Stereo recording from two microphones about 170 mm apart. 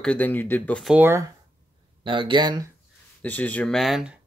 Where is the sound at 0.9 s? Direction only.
15° right (ahead or behind).